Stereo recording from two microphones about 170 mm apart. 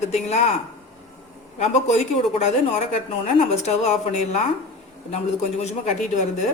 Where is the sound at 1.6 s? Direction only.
40° left (ahead or behind).